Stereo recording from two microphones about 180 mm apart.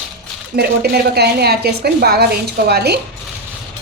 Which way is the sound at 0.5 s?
65° right (ahead or behind).